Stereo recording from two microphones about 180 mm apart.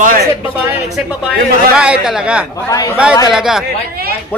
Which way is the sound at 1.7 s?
5° right (ahead or behind).